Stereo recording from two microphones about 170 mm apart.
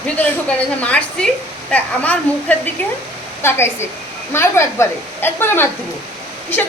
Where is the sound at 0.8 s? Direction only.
5° left (ahead or behind).